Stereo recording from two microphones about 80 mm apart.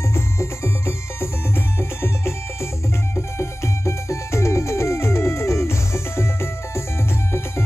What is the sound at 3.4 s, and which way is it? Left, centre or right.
Music, left.